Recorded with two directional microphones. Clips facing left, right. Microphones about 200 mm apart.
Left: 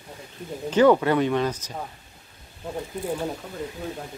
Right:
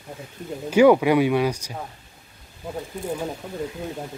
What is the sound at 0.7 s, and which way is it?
Speech, 10° right (ahead or behind).